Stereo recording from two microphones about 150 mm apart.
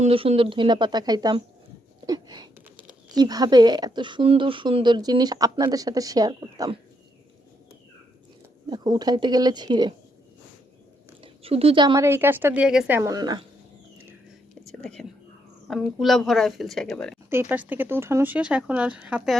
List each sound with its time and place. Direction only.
0.0 s speech: 40° right (ahead or behind)
2.0 s a sound: 25° right (ahead or behind)
3.1 s speech: 25° right (ahead or behind)
8.7 s speech: 25° right (ahead or behind)
11.2 s speech: 40° right (ahead or behind)
11.9 s speech: 15° right (ahead or behind)
13.0 s speech: 25° right (ahead or behind)
14.7 s speech: 5° left (ahead or behind)
17.5 s speech: 10° right (ahead or behind)